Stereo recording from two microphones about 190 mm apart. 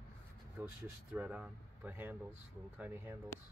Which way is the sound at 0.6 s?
10° right (ahead or behind).